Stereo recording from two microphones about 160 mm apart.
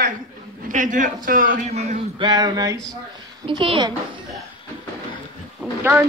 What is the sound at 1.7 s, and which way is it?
Speech, 40° right (ahead or behind).